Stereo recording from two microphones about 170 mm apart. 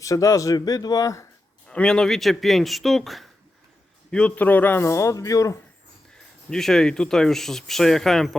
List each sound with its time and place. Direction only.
0.0 s speech: 20° left (ahead or behind)
1.6 s a man's voice: 5° left (ahead or behind)
6.1 s speech: 5° left (ahead or behind)